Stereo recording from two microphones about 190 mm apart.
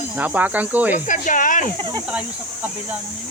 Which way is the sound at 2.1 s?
5° right (ahead or behind).